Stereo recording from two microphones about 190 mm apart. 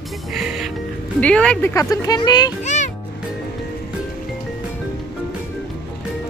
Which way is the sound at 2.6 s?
40° left (ahead or behind).